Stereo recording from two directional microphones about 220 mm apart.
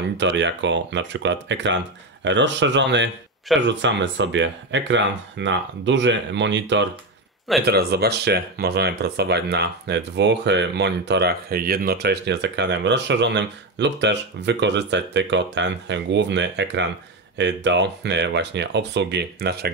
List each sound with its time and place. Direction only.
0.2 s speech: 55° right (ahead or behind)